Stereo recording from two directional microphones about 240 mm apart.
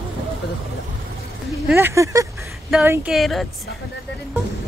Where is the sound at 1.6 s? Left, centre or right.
Centre.